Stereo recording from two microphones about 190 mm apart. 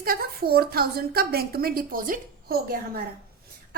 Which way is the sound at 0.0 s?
50° right (ahead or behind).